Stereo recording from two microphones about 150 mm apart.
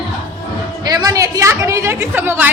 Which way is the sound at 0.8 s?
25° right (ahead or behind).